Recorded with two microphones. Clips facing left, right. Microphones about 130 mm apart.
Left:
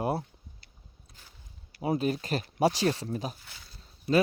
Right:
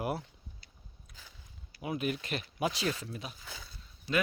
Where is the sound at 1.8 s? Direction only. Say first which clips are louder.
Left 6 dB; 35° left (ahead or behind).